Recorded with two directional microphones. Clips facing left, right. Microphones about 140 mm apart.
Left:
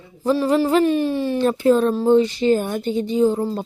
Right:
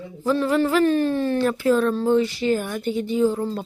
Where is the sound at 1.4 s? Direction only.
25° left (ahead or behind).